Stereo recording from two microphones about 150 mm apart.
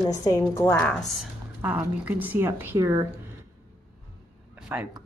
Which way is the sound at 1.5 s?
10° right (ahead or behind).